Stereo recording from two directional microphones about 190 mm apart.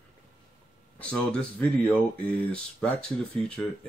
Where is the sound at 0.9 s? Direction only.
5° left (ahead or behind).